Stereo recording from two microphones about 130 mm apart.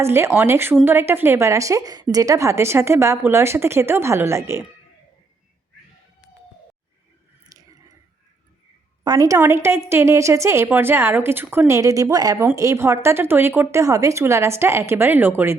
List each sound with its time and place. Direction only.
0.0 s a woman's voice: 20° right (ahead or behind)
7.5 s a sound: 30° right (ahead or behind)
9.0 s a woman's voice: 25° right (ahead or behind)